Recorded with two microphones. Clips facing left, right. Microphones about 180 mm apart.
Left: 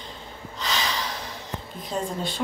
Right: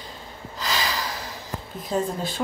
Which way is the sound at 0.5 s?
5° right (ahead or behind).